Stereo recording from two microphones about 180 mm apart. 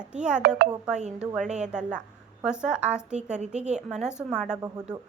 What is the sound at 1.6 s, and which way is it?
A woman's voice, 5° right (ahead or behind).